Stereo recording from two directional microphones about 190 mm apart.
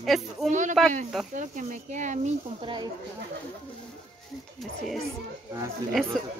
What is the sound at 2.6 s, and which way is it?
Speech, 25° right (ahead or behind).